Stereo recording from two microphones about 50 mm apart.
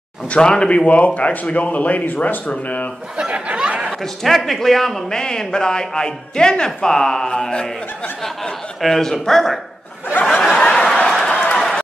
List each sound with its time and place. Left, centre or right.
0.3 s a man's voice: centre
3.2 s a sound: right
4.0 s a man's voice: centre
10.2 s snicker: centre
10.6 s snicker: centre
11.2 s run: left
11.5 s run: centre